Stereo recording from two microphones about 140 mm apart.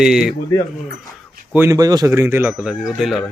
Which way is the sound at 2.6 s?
5° right (ahead or behind).